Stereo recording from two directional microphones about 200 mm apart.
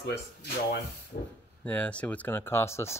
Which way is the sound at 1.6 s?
5° left (ahead or behind).